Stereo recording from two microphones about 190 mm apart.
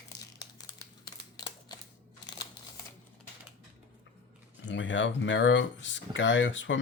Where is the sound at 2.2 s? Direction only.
20° left (ahead or behind).